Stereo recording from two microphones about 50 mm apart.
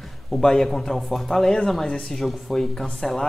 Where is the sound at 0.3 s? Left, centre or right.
Centre.